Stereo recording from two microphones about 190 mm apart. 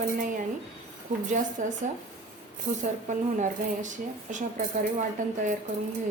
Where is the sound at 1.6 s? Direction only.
40° right (ahead or behind).